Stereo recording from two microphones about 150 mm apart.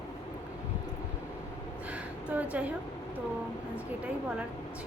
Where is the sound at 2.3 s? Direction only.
10° right (ahead or behind).